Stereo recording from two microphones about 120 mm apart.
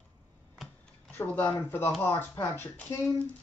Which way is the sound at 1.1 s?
15° left (ahead or behind).